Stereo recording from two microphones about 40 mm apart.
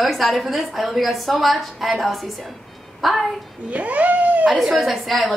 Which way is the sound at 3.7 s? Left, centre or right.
Right.